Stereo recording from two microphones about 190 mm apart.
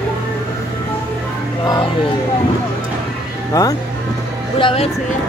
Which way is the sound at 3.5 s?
20° left (ahead or behind).